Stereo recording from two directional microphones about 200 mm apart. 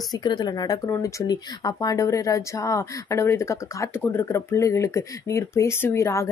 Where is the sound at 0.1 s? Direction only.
20° left (ahead or behind).